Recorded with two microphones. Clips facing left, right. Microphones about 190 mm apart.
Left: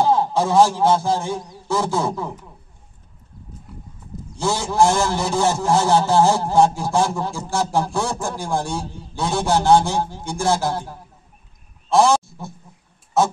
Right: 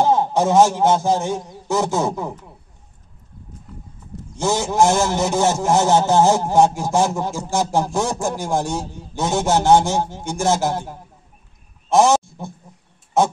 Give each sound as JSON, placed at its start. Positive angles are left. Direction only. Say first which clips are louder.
{"t": 0.0, "sound": "speech", "louder": "right 1 dB", "side_deg": -20}
{"t": 4.4, "sound": "a man's voice", "louder": "right 1 dB", "side_deg": -20}